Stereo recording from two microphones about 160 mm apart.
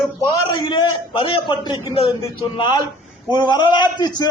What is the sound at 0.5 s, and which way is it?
A man's voice, 30° left (ahead or behind).